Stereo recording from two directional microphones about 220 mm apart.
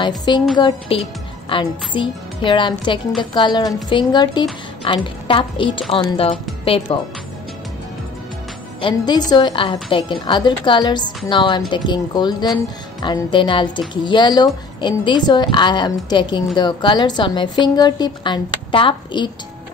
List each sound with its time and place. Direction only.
0.6 s a woman's voice: 25° left (ahead or behind)
8.8 s a woman's voice: 20° left (ahead or behind)